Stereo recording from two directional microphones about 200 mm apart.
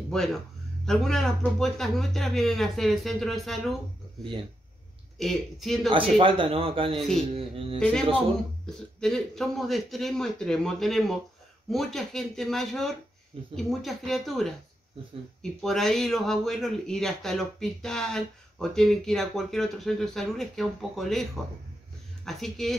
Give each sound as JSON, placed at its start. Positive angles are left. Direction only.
{"t": 0.1, "sound": "speech", "side_deg": 0}
{"t": 5.9, "sound": "a man's voice", "side_deg": -25}
{"t": 7.0, "sound": "speech", "side_deg": 0}
{"t": 7.3, "sound": "a man's voice", "side_deg": -30}
{"t": 8.6, "sound": "speech", "side_deg": 0}
{"t": 15.6, "sound": "speech", "side_deg": 0}